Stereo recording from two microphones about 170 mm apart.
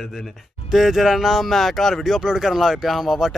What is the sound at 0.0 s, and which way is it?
Speech, centre (ahead or behind).